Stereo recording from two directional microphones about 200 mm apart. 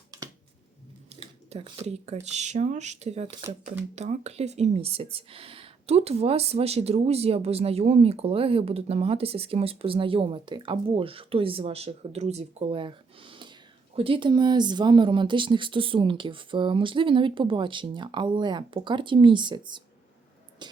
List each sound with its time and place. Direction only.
1.1 s speech: 30° right (ahead or behind)